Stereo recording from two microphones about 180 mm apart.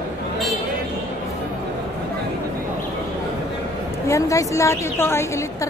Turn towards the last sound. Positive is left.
turn(degrees=15)  # may be behind; listen again after turning